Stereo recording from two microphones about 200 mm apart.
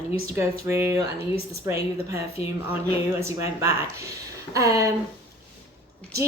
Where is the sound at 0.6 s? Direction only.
10° right (ahead or behind).